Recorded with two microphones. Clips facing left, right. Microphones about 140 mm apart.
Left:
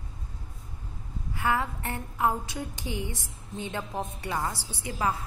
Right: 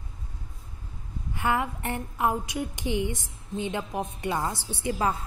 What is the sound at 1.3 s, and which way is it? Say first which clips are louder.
Speech: right 1 dB; 20° right (ahead or behind).